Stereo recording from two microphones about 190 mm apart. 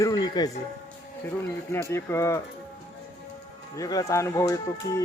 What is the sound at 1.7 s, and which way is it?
Speech, 15° left (ahead or behind).